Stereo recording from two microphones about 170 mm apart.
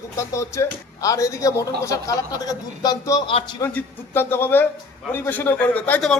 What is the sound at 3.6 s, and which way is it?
A man's voice, 10° left (ahead or behind).